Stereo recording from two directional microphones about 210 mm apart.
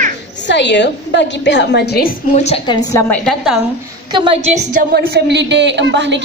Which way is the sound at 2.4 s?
30° left (ahead or behind).